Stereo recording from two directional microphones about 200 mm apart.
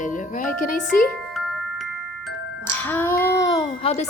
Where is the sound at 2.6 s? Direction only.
10° left (ahead or behind).